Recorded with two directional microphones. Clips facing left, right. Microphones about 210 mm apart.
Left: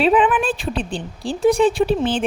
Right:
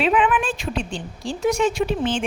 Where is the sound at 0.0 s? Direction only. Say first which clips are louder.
Left 4 dB; 35° left (ahead or behind).